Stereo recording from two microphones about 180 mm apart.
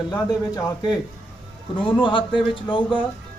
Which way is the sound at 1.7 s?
30° left (ahead or behind).